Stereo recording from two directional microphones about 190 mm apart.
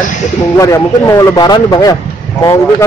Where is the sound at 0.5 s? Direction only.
15° left (ahead or behind).